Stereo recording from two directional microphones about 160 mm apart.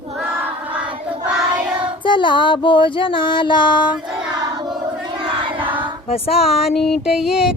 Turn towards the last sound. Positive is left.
turn(degrees=-5)  # may be behind; listen again after turning